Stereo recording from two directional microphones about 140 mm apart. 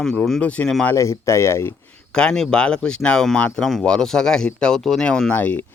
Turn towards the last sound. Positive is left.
turn(degrees=10)  # may be behind; listen again after turning